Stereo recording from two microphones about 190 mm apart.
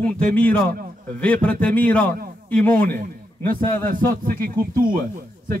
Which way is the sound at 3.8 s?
45° right (ahead or behind).